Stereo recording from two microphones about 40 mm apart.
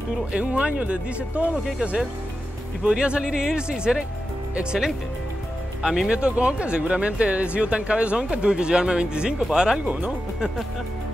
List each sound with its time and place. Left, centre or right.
0.4 s speech: right
2.8 s speech: right
5.8 s speech: centre
6.0 s speech: right
9.8 s speech: right